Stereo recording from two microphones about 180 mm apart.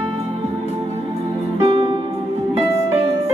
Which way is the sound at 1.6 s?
30° right (ahead or behind).